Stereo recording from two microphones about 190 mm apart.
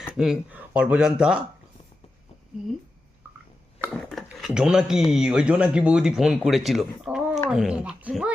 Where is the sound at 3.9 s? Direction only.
Centre (ahead or behind).